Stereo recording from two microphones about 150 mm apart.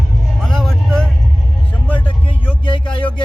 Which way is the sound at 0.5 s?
5° left (ahead or behind).